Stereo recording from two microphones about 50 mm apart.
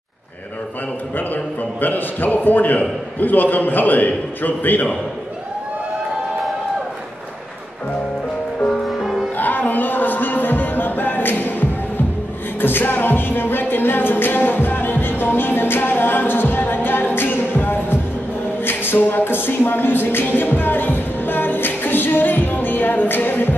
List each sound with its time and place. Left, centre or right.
1.1 s a man's voice: left
8.8 s music: centre
9.4 s music: left
12.5 s music: left